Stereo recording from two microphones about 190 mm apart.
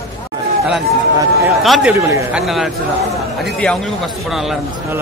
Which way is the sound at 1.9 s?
15° right (ahead or behind).